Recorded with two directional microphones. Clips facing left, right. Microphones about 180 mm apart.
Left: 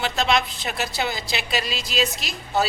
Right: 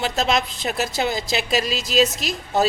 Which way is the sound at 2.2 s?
Centre (ahead or behind).